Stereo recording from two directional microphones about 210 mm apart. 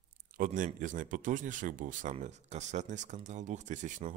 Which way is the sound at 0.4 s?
35° right (ahead or behind).